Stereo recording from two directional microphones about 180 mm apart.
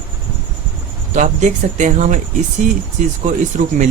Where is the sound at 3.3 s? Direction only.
45° right (ahead or behind).